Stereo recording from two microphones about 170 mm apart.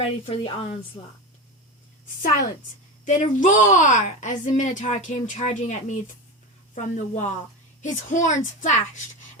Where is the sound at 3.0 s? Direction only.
50° left (ahead or behind).